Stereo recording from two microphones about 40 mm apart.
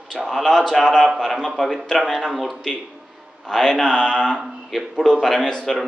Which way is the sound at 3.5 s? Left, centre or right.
Centre.